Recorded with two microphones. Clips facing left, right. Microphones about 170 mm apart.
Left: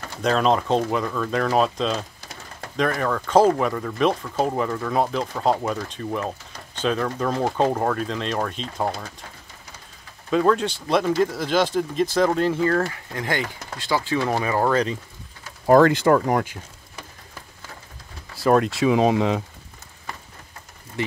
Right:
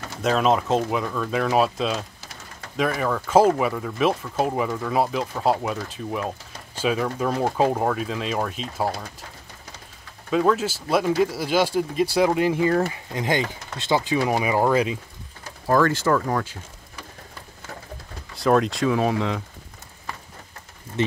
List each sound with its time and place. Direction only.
0.2 s speech: 5° right (ahead or behind)
10.3 s speech: 5° right (ahead or behind)
15.6 s speech: 20° left (ahead or behind)
18.3 s speech: centre (ahead or behind)
18.9 s speech: 20° left (ahead or behind)